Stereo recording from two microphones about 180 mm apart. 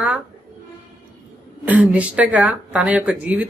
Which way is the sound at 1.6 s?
10° right (ahead or behind).